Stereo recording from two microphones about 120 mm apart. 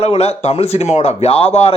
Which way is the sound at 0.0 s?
60° left (ahead or behind).